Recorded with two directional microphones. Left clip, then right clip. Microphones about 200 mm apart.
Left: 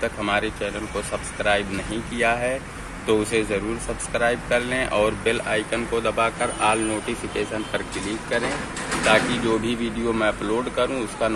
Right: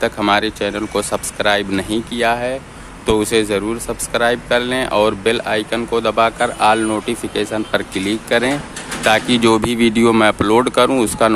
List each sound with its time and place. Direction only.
0.0 s speech: 35° right (ahead or behind)
2.1 s speech: 20° right (ahead or behind)
9.0 s speech: 45° right (ahead or behind)